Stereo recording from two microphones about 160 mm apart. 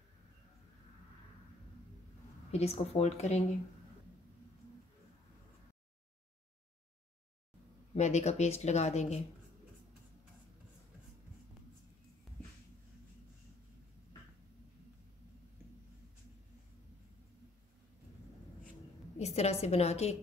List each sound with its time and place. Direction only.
2.5 s speech: 40° left (ahead or behind)
7.9 s speech: 45° left (ahead or behind)
12.3 s a sound: centre (ahead or behind)
19.1 s a woman's voice: 45° left (ahead or behind)